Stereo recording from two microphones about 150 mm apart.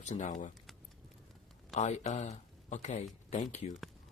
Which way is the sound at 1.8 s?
45° left (ahead or behind).